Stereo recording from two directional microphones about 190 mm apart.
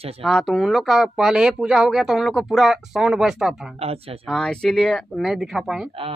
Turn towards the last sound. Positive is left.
turn(degrees=-5)  # may be behind; listen again after turning